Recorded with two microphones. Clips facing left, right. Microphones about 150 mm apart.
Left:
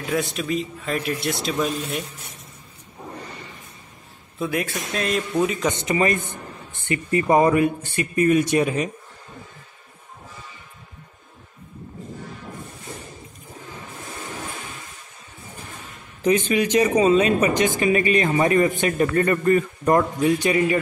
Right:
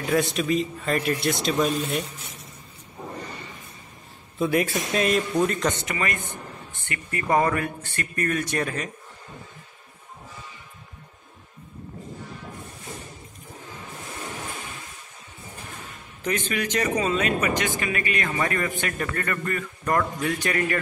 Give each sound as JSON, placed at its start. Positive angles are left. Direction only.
{"t": 0.0, "sound": "speech", "side_deg": 0}
{"t": 4.4, "sound": "speech", "side_deg": 0}
{"t": 5.8, "sound": "speech", "side_deg": 25}
{"t": 16.3, "sound": "speech", "side_deg": 20}